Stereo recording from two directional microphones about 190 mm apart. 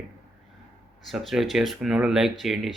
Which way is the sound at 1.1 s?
Centre (ahead or behind).